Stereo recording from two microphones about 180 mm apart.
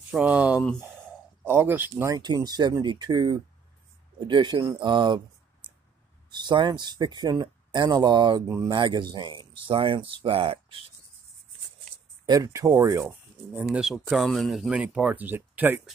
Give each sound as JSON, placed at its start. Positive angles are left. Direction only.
{"t": 0.1, "sound": "speech", "side_deg": -5}
{"t": 12.3, "sound": "speech", "side_deg": -15}
{"t": 13.6, "sound": "speech", "side_deg": -5}